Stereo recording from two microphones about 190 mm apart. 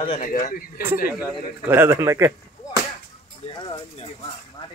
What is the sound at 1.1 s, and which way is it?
Speech, 10° right (ahead or behind).